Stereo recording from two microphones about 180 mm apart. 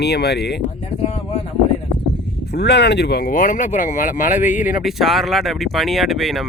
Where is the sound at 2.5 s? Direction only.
70° left (ahead or behind); by 4.7 s 45° left (ahead or behind).